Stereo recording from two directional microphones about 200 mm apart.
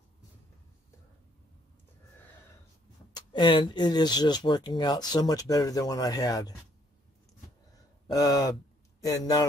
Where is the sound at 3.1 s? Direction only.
20° left (ahead or behind).